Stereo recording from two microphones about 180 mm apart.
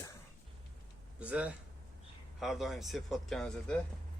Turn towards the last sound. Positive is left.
turn(degrees=5)  # may be behind; listen again after turning